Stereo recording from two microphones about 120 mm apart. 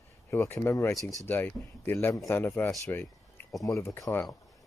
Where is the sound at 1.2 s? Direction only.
15° left (ahead or behind).